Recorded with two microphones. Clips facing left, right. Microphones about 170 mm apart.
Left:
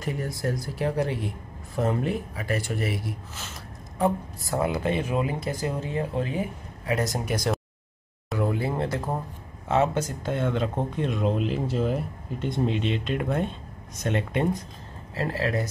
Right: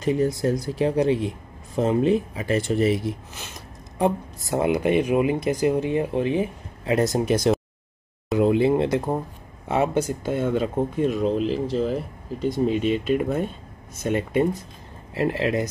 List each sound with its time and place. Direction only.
0.0 s speech: 20° right (ahead or behind)
8.3 s a sound: 20° right (ahead or behind)
9.7 s speech: 10° right (ahead or behind)
15.1 s speech: 20° right (ahead or behind)